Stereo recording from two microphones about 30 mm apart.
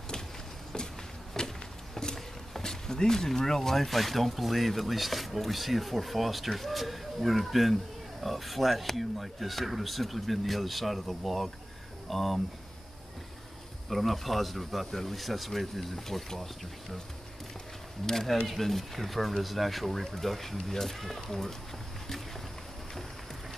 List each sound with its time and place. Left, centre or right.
0.7 s a sound: left
2.6 s speech: centre
3.7 s speech: centre
13.8 s speech: centre
18.0 s speech: centre